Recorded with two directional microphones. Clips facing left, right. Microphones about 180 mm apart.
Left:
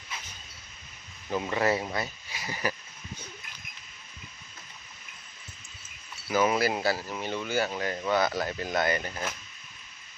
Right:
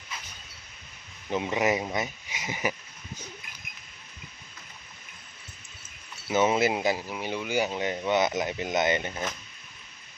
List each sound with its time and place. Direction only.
1.3 s speech: 15° right (ahead or behind)
6.2 s speech: 25° right (ahead or behind)